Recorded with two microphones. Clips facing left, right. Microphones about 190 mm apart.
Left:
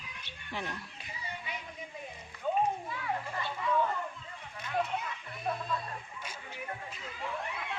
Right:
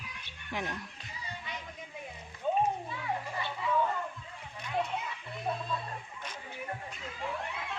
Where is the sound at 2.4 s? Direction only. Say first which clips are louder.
Right 1 dB; 20° right (ahead or behind).